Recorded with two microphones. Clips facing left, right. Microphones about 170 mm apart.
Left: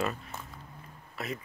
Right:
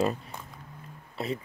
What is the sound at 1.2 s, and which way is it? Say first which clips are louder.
Speech: right 5 dB; 30° right (ahead or behind).